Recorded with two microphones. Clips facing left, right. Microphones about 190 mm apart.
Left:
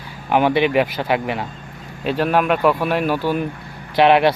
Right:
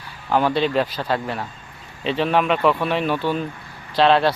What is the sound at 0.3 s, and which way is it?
Speech, 15° left (ahead or behind).